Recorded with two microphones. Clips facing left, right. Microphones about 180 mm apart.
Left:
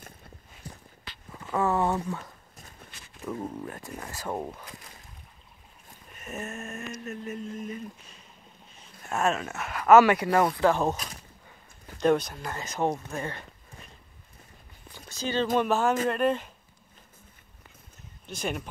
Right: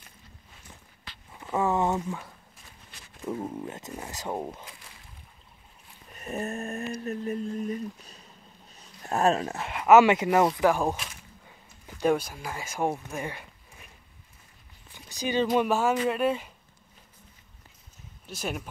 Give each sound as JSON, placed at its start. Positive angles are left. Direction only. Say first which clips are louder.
{"t": 0.7, "sound": "walk", "louder": "left 8 dB", "side_deg": 35}
{"t": 1.5, "sound": "a sound", "louder": "even", "side_deg": -15}
{"t": 3.6, "sound": "speech", "louder": "right 1 dB", "side_deg": -20}
{"t": 6.1, "sound": "a sound", "louder": "right 5 dB", "side_deg": -35}
{"t": 9.0, "sound": "speech", "louder": "right 3 dB", "side_deg": -35}
{"t": 12.0, "sound": "speech", "louder": "left 1 dB", "side_deg": -5}
{"t": 13.1, "sound": "a sound", "louder": "even", "side_deg": -15}
{"t": 15.0, "sound": "speech", "louder": "right 2 dB", "side_deg": -15}
{"t": 18.2, "sound": "speech", "louder": "left 1 dB", "side_deg": -5}